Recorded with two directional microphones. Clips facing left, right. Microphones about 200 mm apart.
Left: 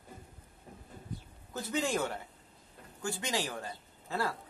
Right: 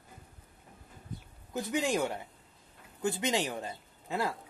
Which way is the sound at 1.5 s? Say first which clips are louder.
Right 2 dB; 15° right (ahead or behind).